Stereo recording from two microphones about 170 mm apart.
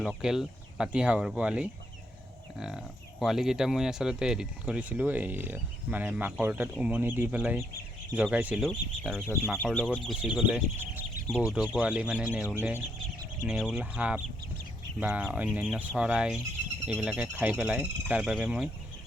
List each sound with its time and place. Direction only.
0.0 s speech: centre (ahead or behind)
8.6 s speech: 5° left (ahead or behind); by 13.5 s 20° right (ahead or behind)
13.5 s speech: centre (ahead or behind)